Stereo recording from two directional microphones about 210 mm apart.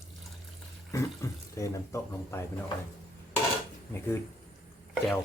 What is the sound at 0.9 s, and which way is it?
Speech, 15° left (ahead or behind).